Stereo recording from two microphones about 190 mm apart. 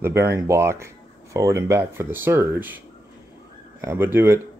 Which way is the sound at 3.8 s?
10° right (ahead or behind).